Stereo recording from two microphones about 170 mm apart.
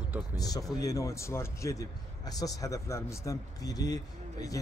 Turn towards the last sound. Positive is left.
turn(degrees=20)  # may be behind; listen again after turning